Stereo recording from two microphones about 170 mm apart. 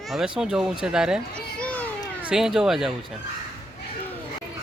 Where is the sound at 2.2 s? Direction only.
5° right (ahead or behind).